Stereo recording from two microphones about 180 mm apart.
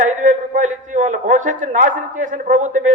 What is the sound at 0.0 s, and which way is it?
A man's voice, 45° right (ahead or behind).